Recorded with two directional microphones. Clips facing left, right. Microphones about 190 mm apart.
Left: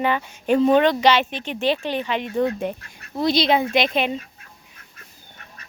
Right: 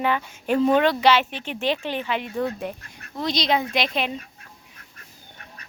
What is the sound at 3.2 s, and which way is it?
Speech, 5° left (ahead or behind).